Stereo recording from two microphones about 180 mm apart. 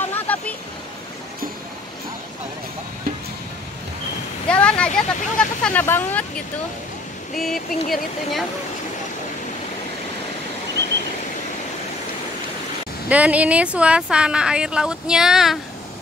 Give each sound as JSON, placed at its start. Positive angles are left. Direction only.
{"t": 0.0, "sound": "vehicle", "side_deg": 10}
{"t": 4.5, "sound": "speech", "side_deg": 5}
{"t": 13.1, "sound": "speech", "side_deg": -10}